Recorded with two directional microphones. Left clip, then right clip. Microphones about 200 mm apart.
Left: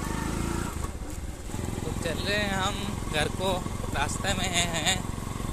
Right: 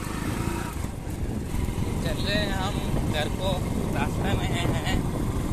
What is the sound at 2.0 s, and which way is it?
Vehicle, 30° left (ahead or behind).